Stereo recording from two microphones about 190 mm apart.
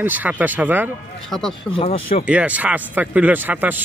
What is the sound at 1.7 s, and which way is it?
Speech, 30° left (ahead or behind).